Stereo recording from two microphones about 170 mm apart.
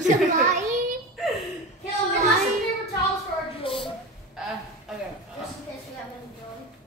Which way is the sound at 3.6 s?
30° left (ahead or behind).